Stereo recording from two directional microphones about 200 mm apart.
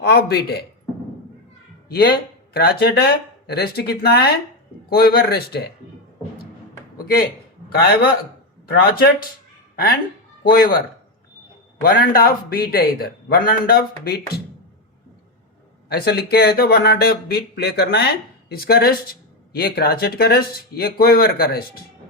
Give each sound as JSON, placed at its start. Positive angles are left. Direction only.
{"t": 0.0, "sound": "speech", "side_deg": 50}
{"t": 1.9, "sound": "speech", "side_deg": 50}
{"t": 6.9, "sound": "speech", "side_deg": 50}
{"t": 10.4, "sound": "speech", "side_deg": 50}
{"t": 11.8, "sound": "speech", "side_deg": 45}
{"t": 15.9, "sound": "speech", "side_deg": 55}